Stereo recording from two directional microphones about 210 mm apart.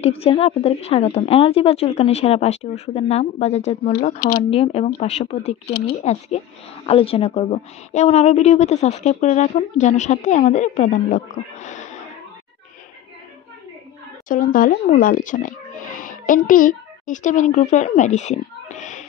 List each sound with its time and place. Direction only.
0.0 s a woman's voice: 30° left (ahead or behind)
4.4 s a woman's voice: 30° left (ahead or behind)
5.7 s speech: 50° left (ahead or behind)
6.0 s a woman's voice: 30° left (ahead or behind)
14.3 s speech: 40° left (ahead or behind)